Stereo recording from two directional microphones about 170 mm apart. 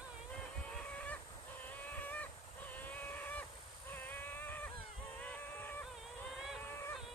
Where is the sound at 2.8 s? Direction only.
10° left (ahead or behind).